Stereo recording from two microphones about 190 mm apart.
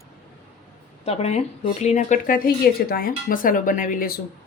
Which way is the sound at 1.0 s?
35° left (ahead or behind).